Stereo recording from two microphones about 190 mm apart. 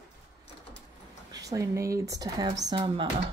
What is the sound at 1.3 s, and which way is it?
Speech, 15° right (ahead or behind).